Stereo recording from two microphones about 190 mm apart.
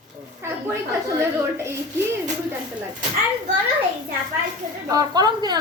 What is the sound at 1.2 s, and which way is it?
Speech, 15° right (ahead or behind).